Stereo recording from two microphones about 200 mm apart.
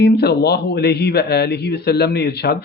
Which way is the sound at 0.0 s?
50° left (ahead or behind).